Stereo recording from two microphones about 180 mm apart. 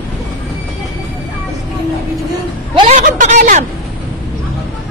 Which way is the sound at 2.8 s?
40° right (ahead or behind).